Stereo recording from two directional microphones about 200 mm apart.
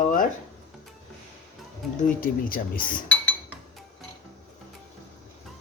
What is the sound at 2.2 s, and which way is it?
Speech, 45° left (ahead or behind).